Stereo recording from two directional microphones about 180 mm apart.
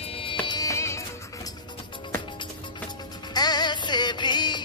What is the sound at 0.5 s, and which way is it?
Music, 20° left (ahead or behind).